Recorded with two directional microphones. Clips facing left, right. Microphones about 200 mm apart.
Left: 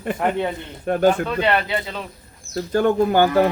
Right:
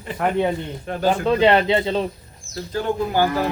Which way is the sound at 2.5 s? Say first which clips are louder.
Left 5 dB; 55° left (ahead or behind).